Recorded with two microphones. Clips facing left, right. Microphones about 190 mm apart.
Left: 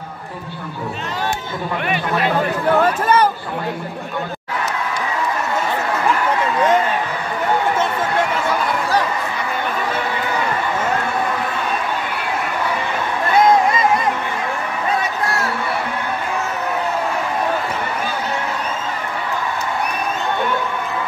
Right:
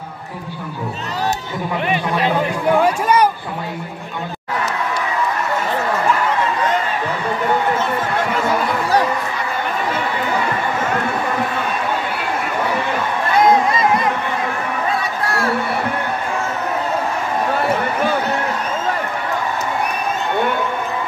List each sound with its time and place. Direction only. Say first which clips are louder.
2.7 s speech: right 1 dB; 10° right (ahead or behind)